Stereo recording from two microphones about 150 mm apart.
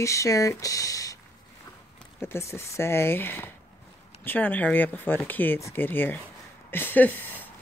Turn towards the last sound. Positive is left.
turn(degrees=10)  # may be behind; listen again after turning